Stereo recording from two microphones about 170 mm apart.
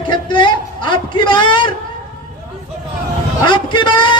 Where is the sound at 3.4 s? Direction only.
30° left (ahead or behind).